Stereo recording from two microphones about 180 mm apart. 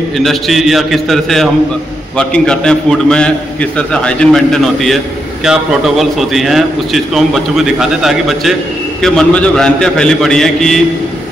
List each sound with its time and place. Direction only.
0.2 s a man's voice: centre (ahead or behind)